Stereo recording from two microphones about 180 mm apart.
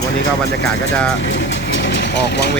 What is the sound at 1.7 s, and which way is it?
Vehicle, 75° left (ahead or behind).